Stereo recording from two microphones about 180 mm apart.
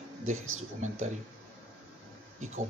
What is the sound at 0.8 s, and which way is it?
Speech, 40° right (ahead or behind).